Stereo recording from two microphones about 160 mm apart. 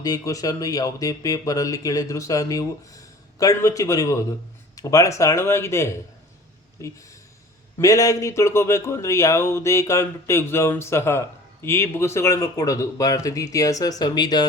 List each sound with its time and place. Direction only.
0.0 s speech: 20° left (ahead or behind)